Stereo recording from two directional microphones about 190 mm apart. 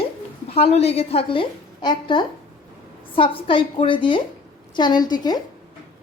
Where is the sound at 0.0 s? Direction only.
30° left (ahead or behind).